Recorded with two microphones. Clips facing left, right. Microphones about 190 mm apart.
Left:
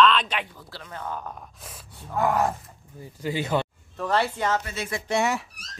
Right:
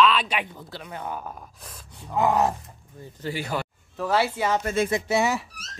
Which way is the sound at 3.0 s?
15° left (ahead or behind).